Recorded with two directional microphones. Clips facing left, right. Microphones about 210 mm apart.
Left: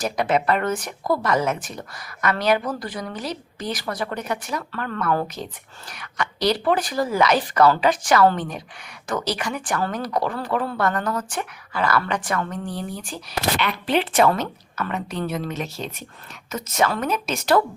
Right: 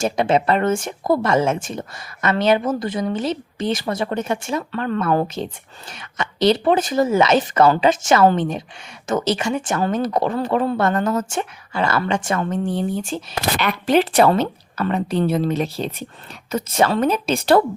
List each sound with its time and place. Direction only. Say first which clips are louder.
0.0 s speech: right 4 dB; 25° right (ahead or behind)
13.6 s a woman's voice: right 7 dB; 45° right (ahead or behind)